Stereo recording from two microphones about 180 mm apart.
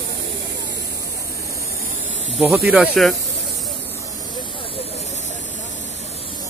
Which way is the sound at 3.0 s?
Centre (ahead or behind).